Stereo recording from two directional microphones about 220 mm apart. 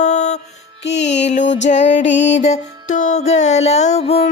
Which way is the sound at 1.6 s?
30° left (ahead or behind).